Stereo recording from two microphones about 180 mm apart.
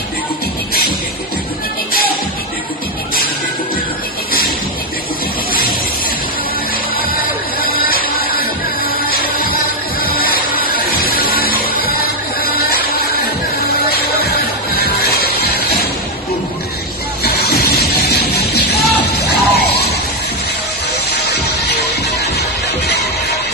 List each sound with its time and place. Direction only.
7.6 s music: 55° left (ahead or behind)
13.8 s music: 60° left (ahead or behind)
17.2 s music: 60° left (ahead or behind)
19.5 s a sound: 60° left (ahead or behind)
21.2 s music: 65° left (ahead or behind)